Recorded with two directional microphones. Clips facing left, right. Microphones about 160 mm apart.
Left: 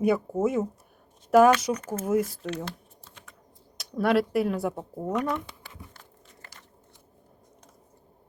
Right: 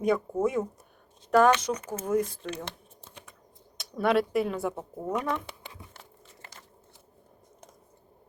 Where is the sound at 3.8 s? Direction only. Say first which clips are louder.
Left 1 dB; centre (ahead or behind).